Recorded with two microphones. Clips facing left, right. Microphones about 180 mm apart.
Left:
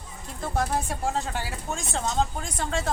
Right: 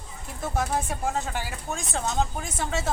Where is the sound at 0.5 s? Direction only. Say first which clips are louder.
Left 1 dB; centre (ahead or behind).